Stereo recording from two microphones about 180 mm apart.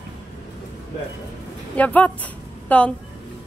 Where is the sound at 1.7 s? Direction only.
10° left (ahead or behind).